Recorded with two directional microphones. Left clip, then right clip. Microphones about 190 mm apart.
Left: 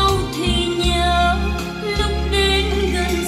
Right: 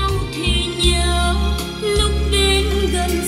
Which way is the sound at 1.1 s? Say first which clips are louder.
Left 4 dB; 60° right (ahead or behind).